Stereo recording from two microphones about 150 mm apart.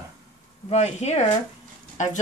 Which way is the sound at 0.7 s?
45° left (ahead or behind).